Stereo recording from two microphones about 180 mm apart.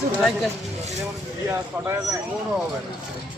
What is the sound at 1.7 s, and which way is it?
Speech, 15° right (ahead or behind).